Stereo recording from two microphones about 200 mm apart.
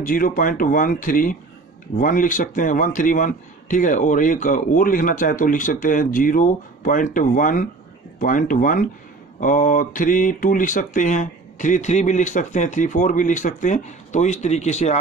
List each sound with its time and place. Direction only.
0.0 s a man's voice: 45° left (ahead or behind)